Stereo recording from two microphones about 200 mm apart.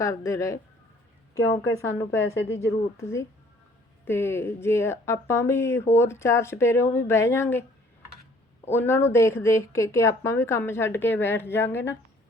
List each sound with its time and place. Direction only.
0.0 s a woman's voice: 15° left (ahead or behind)
8.7 s a woman's voice: 10° left (ahead or behind)